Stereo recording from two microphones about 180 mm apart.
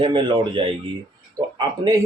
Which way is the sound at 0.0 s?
25° right (ahead or behind).